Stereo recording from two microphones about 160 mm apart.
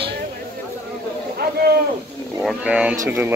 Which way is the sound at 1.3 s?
70° right (ahead or behind).